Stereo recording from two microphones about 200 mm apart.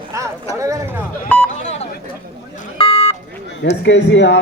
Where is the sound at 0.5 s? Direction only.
15° right (ahead or behind).